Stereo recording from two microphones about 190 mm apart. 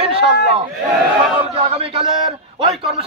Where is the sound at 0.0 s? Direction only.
30° right (ahead or behind).